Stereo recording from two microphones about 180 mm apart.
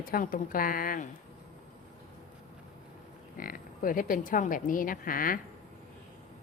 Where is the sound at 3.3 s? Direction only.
50° left (ahead or behind).